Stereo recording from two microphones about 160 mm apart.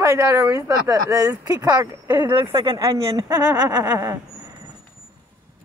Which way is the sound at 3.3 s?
15° right (ahead or behind).